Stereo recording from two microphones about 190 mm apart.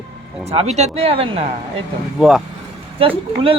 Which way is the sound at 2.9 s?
30° right (ahead or behind).